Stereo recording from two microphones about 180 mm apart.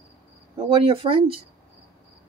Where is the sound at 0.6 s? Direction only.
30° right (ahead or behind).